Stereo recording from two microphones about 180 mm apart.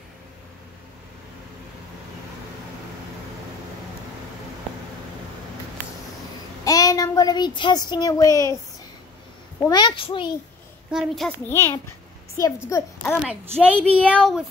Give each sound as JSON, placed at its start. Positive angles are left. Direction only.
{"t": 6.6, "sound": "a child's voice", "side_deg": 20}
{"t": 9.7, "sound": "a child's voice", "side_deg": 25}
{"t": 10.9, "sound": "a woman's voice", "side_deg": 0}
{"t": 11.4, "sound": "a child's voice", "side_deg": 15}
{"t": 13.6, "sound": "a child's voice", "side_deg": -10}
{"t": 13.9, "sound": "a child's voice", "side_deg": 5}